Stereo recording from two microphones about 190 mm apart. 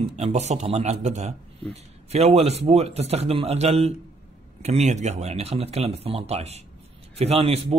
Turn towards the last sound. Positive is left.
turn(degrees=-30)  # may be behind; listen again after turning